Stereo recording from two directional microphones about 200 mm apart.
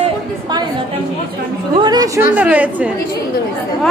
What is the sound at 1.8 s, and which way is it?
Speech, 20° right (ahead or behind).